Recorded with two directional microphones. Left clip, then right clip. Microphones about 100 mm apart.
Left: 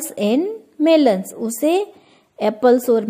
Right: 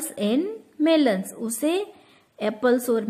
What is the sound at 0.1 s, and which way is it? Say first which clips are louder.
A woman's voice: left 6 dB; 25° left (ahead or behind).